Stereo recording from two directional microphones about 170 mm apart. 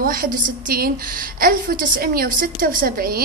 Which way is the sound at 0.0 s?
55° right (ahead or behind).